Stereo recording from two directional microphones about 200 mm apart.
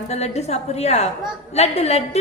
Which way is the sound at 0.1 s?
35° left (ahead or behind).